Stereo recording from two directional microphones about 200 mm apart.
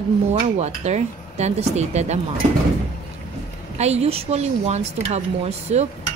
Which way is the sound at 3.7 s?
30° right (ahead or behind).